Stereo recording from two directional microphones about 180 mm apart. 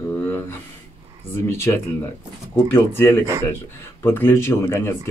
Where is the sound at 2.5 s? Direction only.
15° left (ahead or behind).